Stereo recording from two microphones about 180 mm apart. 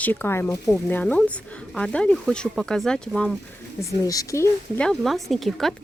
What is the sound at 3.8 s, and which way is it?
Speech, 20° left (ahead or behind).